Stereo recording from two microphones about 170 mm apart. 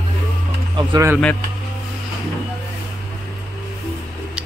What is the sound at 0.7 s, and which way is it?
Speech, 20° right (ahead or behind).